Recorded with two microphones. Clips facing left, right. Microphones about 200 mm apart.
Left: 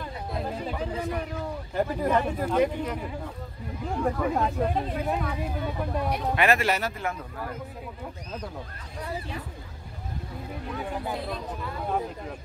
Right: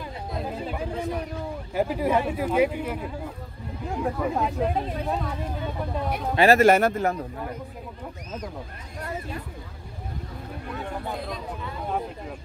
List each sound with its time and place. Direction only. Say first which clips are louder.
0.3 s a sound: right 1 dB; 5° right (ahead or behind)
1.7 s speech: right 2 dB; 10° right (ahead or behind)
6.3 s speech: right 6 dB; 35° right (ahead or behind)
6.6 s a man's voice: right 9 dB; 50° right (ahead or behind)
10.8 s speech: left 1 dB; 5° left (ahead or behind)